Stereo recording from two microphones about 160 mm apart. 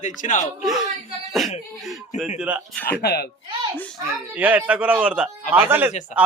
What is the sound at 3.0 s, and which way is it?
Speech, 90° left.